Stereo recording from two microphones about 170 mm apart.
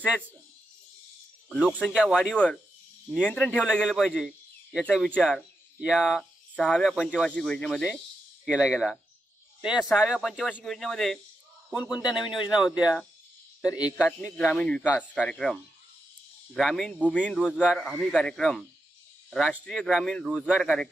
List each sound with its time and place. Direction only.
1.8 s speech: centre (ahead or behind)
3.7 s a man's voice: 5° right (ahead or behind)
11.8 s speech: 25° left (ahead or behind)
12.1 s speech: centre (ahead or behind)
14.2 s speech: 5° left (ahead or behind)